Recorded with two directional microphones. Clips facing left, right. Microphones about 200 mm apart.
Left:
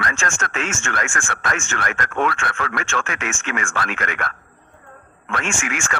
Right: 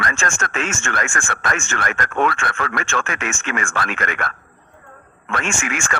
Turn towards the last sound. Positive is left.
turn(degrees=-40)  # may be behind; listen again after turning